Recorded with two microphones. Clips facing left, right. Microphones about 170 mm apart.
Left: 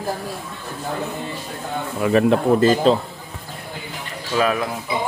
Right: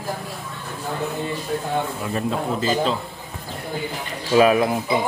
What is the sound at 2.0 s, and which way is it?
Speech, 80° left.